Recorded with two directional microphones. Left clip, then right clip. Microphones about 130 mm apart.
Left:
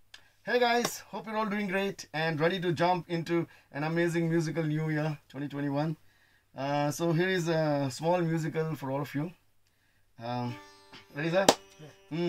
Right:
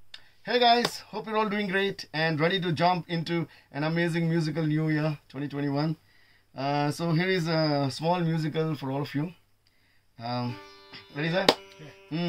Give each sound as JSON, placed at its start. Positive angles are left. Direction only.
{"t": 0.1, "sound": "a sound", "side_deg": 20}
{"t": 1.1, "sound": "speech", "side_deg": 15}
{"t": 10.5, "sound": "music", "side_deg": -40}
{"t": 10.9, "sound": "music", "side_deg": 15}